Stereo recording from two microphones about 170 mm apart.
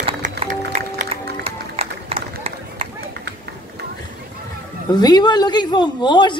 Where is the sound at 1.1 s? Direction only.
35° right (ahead or behind).